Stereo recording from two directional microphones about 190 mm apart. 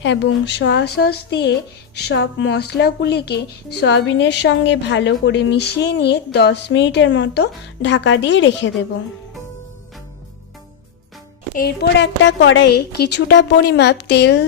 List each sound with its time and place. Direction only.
0.0 s a woman's voice: 65° left (ahead or behind)
11.5 s a woman's voice: 55° left (ahead or behind)